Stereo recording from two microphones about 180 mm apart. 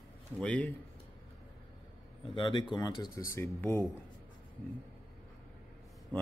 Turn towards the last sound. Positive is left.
turn(degrees=10)  # may be behind; listen again after turning